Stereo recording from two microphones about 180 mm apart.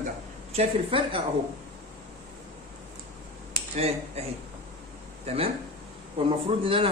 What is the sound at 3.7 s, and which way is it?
Speech, 35° right (ahead or behind).